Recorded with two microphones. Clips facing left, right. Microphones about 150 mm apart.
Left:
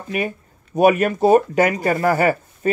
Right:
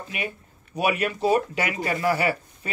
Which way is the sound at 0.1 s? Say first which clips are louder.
Left 10 dB; 45° left (ahead or behind).